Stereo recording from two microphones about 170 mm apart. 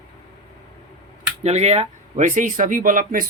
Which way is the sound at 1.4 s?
40° right (ahead or behind).